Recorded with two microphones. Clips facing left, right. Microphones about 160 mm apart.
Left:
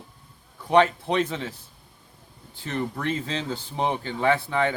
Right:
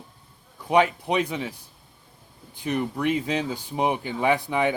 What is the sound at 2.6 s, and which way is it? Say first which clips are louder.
Speech: right 3 dB; 15° right (ahead or behind).